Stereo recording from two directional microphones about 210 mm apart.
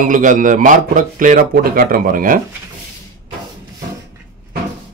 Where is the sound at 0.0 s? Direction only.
40° right (ahead or behind).